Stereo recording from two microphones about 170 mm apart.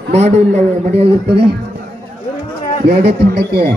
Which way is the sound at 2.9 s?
75° right (ahead or behind).